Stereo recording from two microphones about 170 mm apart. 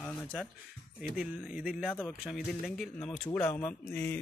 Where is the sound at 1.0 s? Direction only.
5° right (ahead or behind).